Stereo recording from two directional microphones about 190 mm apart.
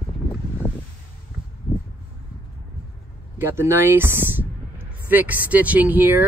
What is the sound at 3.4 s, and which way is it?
Speech, 10° right (ahead or behind).